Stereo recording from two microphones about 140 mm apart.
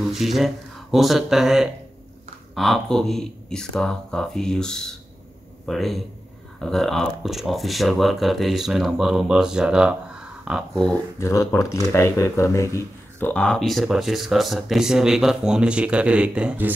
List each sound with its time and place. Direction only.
0.0 s speech: centre (ahead or behind)
11.1 s speech: 20° left (ahead or behind)
13.3 s speech: 5° left (ahead or behind); by 16.7 s 10° right (ahead or behind)